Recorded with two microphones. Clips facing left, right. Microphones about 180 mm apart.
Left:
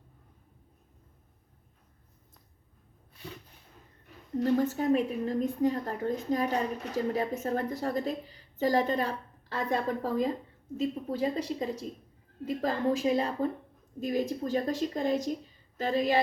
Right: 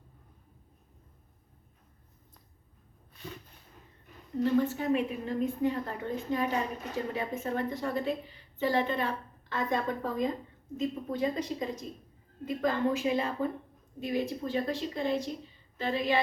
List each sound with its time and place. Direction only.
4.5 s a woman's voice: 40° left (ahead or behind)